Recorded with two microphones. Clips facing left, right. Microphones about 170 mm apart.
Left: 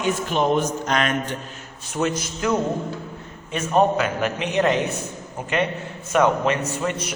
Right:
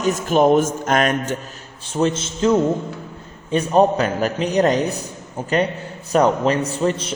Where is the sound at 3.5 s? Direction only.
35° right (ahead or behind).